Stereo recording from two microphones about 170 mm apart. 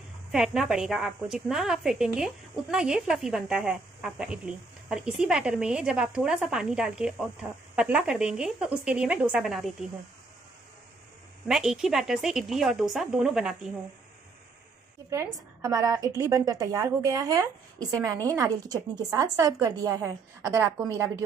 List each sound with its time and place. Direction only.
0.3 s a woman's voice: 5° right (ahead or behind)
11.4 s a woman's voice: 5° right (ahead or behind)
15.0 s a woman's voice: 20° right (ahead or behind)